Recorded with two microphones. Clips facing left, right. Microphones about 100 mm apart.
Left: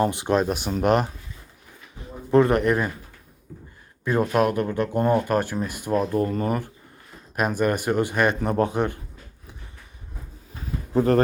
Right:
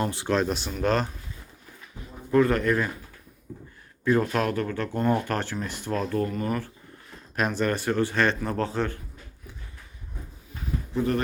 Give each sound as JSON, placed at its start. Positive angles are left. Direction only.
{"t": 0.0, "sound": "speech", "side_deg": 20}
{"t": 2.3, "sound": "speech", "side_deg": 20}
{"t": 4.0, "sound": "speech", "side_deg": 15}
{"t": 7.3, "sound": "speech", "side_deg": 10}
{"t": 10.9, "sound": "speech", "side_deg": 40}